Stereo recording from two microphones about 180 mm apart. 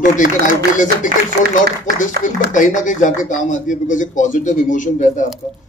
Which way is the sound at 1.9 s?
45° left (ahead or behind).